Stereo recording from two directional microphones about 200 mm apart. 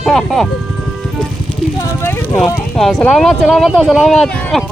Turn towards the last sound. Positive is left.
turn(degrees=0)  # may be behind; listen again after turning